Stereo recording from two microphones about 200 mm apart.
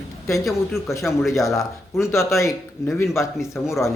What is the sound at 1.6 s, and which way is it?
Speech, 15° left (ahead or behind).